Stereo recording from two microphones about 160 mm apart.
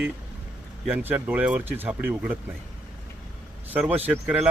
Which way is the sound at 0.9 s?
10° right (ahead or behind).